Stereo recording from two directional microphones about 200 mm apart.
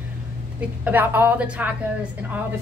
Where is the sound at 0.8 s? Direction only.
10° right (ahead or behind).